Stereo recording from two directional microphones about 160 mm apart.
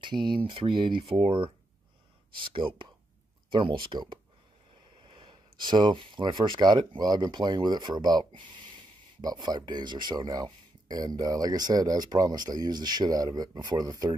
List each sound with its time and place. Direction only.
0.0 s speech: 30° right (ahead or behind)